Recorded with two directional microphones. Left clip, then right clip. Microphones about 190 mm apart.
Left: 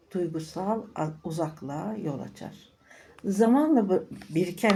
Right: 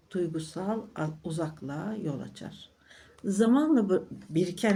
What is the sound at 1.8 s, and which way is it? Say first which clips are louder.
Speech: left 2 dB; 10° right (ahead or behind).